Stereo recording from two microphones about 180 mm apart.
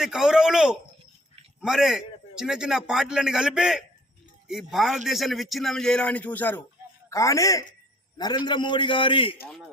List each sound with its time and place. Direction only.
0.0 s a man's voice: 5° right (ahead or behind); by 9.3 s 30° left (ahead or behind)